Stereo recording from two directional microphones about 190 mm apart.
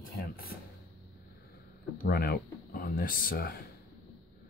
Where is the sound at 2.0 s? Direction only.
55° left (ahead or behind).